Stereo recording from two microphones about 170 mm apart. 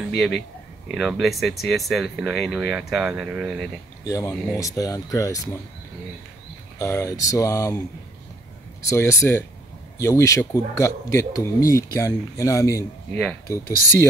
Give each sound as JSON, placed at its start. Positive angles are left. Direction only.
{"t": 0.1, "sound": "speech", "side_deg": 5}
{"t": 4.0, "sound": "speech", "side_deg": 20}
{"t": 6.8, "sound": "speech", "side_deg": 15}
{"t": 8.8, "sound": "speech", "side_deg": 15}